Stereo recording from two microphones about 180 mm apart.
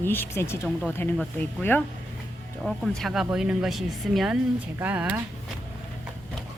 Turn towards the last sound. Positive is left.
turn(degrees=-10)  # may be behind; listen again after turning